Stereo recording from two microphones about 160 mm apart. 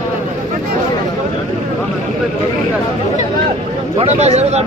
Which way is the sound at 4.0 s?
40° right (ahead or behind).